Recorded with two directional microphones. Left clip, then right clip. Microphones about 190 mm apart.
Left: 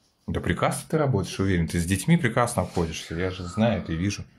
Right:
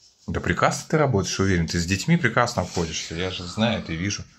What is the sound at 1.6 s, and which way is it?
Speech, 10° left (ahead or behind).